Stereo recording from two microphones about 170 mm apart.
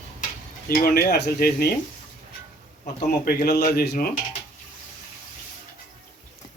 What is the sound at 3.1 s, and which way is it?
Speech, 70° left (ahead or behind).